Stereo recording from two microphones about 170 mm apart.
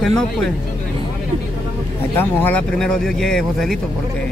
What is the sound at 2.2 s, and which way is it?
Speech, 10° left (ahead or behind).